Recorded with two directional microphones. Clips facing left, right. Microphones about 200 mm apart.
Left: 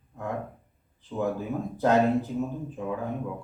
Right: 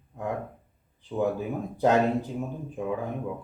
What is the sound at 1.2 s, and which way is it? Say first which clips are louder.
Speech: right 1 dB; 15° right (ahead or behind).